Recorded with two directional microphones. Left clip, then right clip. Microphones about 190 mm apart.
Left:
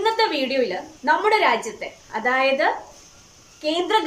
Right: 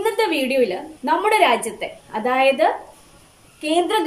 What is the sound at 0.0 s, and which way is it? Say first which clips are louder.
A woman's voice: even; 10° right (ahead or behind).